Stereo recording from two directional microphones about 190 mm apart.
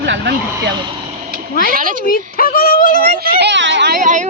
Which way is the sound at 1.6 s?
45° right (ahead or behind).